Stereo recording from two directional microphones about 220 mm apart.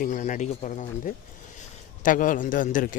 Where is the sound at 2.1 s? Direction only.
35° left (ahead or behind).